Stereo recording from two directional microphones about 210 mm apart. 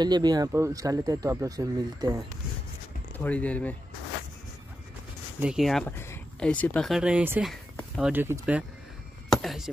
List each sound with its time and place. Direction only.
0.0 s speech: 20° right (ahead or behind)
3.3 s speech: 5° left (ahead or behind)
5.4 s speech: centre (ahead or behind)
7.7 s a sound: centre (ahead or behind)
8.1 s speech: 10° right (ahead or behind)
9.3 s a sound: centre (ahead or behind)